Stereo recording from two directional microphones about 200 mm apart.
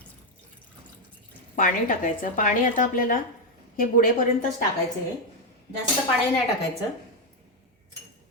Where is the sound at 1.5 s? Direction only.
40° left (ahead or behind).